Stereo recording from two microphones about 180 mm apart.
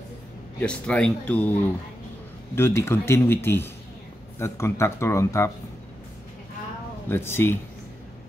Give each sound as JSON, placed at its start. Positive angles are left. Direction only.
{"t": 0.6, "sound": "speech", "side_deg": 5}
{"t": 2.5, "sound": "speech", "side_deg": 15}
{"t": 7.1, "sound": "speech", "side_deg": 15}